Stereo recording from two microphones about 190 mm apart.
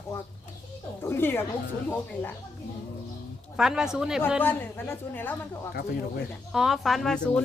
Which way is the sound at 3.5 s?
5° right (ahead or behind).